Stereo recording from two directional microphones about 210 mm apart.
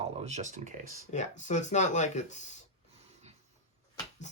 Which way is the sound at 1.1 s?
35° left (ahead or behind).